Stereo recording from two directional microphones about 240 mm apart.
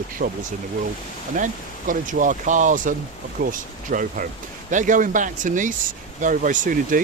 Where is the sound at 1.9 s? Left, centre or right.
Right.